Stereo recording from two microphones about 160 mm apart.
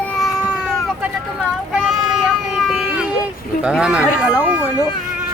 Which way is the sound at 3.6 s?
5° right (ahead or behind).